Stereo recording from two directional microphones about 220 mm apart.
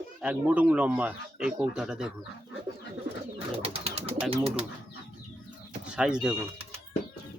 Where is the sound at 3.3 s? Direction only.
25° right (ahead or behind).